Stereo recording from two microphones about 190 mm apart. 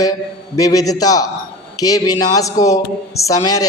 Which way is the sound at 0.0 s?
20° left (ahead or behind).